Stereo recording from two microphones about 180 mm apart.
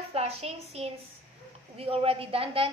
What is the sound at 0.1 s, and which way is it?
A child's voice, 35° right (ahead or behind).